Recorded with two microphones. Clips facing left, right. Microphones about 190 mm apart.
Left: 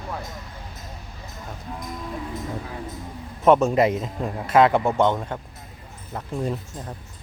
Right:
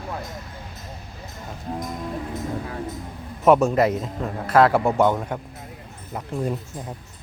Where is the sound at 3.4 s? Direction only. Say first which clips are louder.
Even; 5° right (ahead or behind).